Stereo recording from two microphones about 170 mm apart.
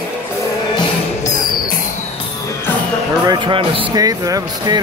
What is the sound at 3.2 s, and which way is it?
Speech, 25° right (ahead or behind).